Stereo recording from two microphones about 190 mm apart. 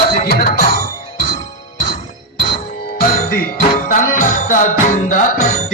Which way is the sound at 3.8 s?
45° left (ahead or behind).